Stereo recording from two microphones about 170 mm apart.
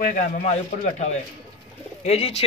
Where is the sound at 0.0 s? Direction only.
50° left (ahead or behind).